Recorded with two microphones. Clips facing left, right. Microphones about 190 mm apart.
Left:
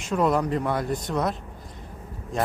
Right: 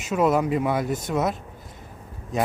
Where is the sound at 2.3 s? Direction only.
5° right (ahead or behind).